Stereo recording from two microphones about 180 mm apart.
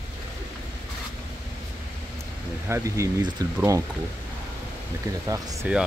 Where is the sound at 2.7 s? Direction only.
15° right (ahead or behind).